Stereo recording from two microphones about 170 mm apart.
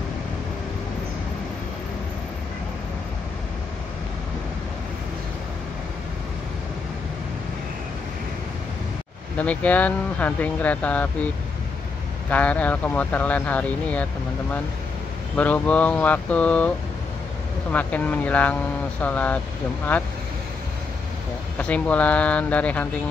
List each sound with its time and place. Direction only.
9.4 s speech: 10° left (ahead or behind)
12.3 s speech: 10° left (ahead or behind)
15.3 s speech: 10° left (ahead or behind)
17.7 s speech: 10° left (ahead or behind)
21.5 s speech: 10° left (ahead or behind)